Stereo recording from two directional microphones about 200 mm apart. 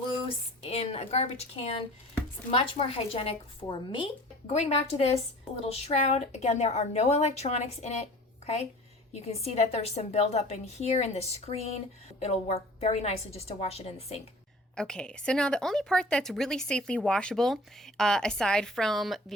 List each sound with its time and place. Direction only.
0.6 s a woman's voice: 30° left (ahead or behind)
9.1 s a woman's voice: 30° left (ahead or behind)
14.8 s a woman's voice: 5° left (ahead or behind)